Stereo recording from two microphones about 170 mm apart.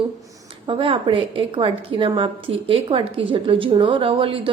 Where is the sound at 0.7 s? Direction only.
30° right (ahead or behind).